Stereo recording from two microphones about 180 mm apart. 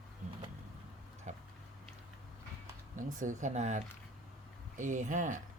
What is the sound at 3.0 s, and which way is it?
Speech, 45° right (ahead or behind).